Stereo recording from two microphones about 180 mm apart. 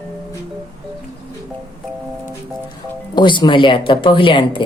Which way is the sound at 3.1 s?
25° left (ahead or behind).